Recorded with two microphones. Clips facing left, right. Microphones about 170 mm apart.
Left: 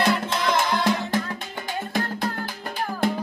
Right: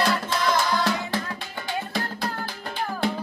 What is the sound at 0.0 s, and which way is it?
Music, 20° left (ahead or behind).